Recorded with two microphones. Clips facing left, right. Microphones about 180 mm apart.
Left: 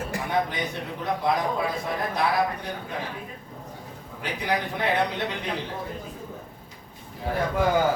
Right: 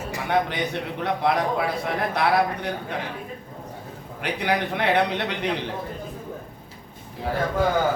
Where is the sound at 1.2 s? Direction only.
70° right (ahead or behind).